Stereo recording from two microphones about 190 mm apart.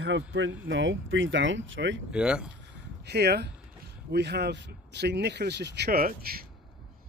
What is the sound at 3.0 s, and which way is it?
Speech, 60° right (ahead or behind).